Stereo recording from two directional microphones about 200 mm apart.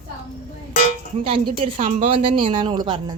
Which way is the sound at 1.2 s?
25° right (ahead or behind).